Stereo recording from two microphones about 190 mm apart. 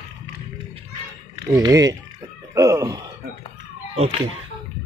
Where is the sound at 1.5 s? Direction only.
20° right (ahead or behind).